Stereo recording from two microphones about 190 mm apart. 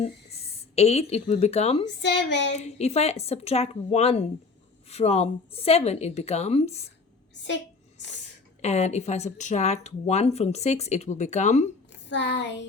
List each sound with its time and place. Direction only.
0.8 s speech: 35° left (ahead or behind)
2.0 s speech: 65° left (ahead or behind)
2.6 s speech: 35° left (ahead or behind)
8.6 s speech: 35° left (ahead or behind)
11.9 s speech: 70° left (ahead or behind)